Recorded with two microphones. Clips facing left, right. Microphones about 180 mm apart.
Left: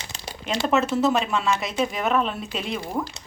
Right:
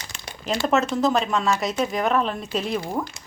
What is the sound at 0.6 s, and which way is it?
A woman's voice, centre (ahead or behind).